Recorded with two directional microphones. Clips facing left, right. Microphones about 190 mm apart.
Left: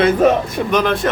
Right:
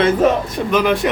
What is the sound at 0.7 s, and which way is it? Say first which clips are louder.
Speech: right 1 dB; 10° right (ahead or behind).